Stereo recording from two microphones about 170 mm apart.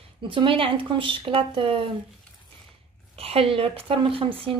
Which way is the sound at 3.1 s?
35° right (ahead or behind).